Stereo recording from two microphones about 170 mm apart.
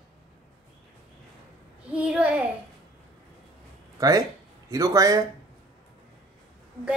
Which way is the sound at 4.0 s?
20° right (ahead or behind).